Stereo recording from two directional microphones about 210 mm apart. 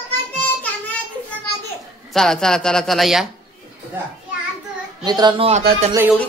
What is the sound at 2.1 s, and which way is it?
Speech, centre (ahead or behind).